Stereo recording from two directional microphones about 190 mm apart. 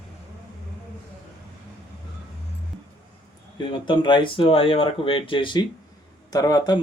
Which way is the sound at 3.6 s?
25° left (ahead or behind).